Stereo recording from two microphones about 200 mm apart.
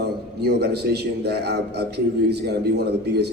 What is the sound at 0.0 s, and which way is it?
A man's voice, 55° right (ahead or behind).